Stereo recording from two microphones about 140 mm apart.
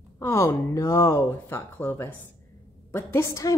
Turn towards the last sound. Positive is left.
turn(degrees=20)  # may be behind; listen again after turning